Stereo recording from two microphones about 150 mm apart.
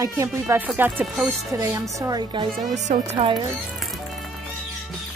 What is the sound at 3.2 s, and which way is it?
Speech, 30° right (ahead or behind).